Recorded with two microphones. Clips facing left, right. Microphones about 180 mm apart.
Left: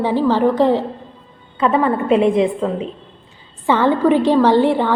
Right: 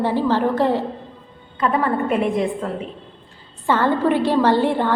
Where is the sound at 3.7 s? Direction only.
15° left (ahead or behind).